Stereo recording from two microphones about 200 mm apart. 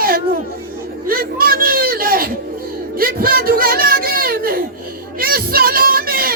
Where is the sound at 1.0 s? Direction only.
45° right (ahead or behind).